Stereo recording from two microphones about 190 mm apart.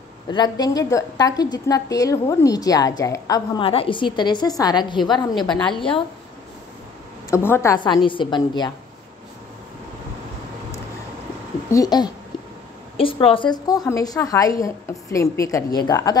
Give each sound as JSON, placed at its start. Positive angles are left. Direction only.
{"t": 0.3, "sound": "a woman's voice", "side_deg": 20}
{"t": 7.2, "sound": "a woman's voice", "side_deg": 15}
{"t": 11.7, "sound": "a woman's voice", "side_deg": 20}